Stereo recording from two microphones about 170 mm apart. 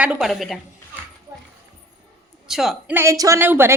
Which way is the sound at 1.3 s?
20° right (ahead or behind).